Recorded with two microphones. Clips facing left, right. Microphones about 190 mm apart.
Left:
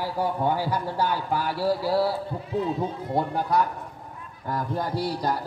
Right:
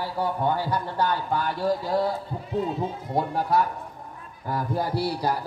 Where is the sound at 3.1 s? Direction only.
Centre (ahead or behind).